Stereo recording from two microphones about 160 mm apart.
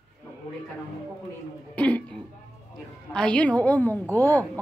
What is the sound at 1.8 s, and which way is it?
Music, 10° left (ahead or behind).